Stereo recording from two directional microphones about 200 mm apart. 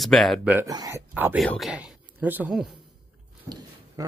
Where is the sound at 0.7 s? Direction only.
20° right (ahead or behind).